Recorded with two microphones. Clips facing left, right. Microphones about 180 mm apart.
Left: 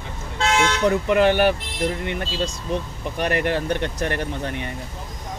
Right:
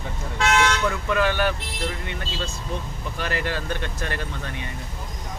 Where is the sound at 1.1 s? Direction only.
20° left (ahead or behind).